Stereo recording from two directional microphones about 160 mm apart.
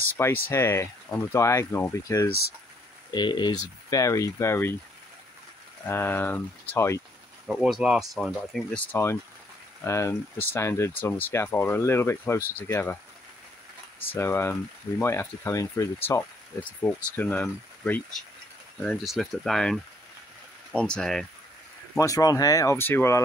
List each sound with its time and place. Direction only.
0.2 s speech: 15° left (ahead or behind)
3.1 s speech: 30° left (ahead or behind)
5.9 s speech: 15° left (ahead or behind)
7.4 s speech: centre (ahead or behind)
8.9 s speech: 15° left (ahead or behind)
14.1 s speech: 15° left (ahead or behind)
21.9 s speech: 20° left (ahead or behind)